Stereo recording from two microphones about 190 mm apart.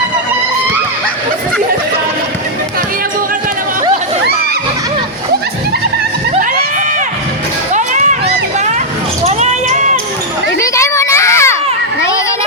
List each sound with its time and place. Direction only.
7.7 s a sound: 40° right (ahead or behind)
9.2 s basketball bounce: 35° right (ahead or behind)
10.6 s children playing: 15° left (ahead or behind)